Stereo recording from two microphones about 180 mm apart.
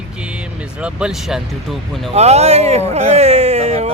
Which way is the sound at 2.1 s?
35° right (ahead or behind).